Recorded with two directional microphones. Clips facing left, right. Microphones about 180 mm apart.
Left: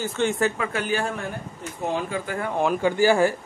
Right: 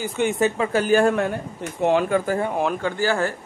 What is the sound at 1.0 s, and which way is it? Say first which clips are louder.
A man's voice: right 9 dB; 65° right (ahead or behind).